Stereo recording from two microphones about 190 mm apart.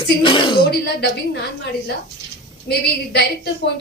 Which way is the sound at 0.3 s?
30° left (ahead or behind).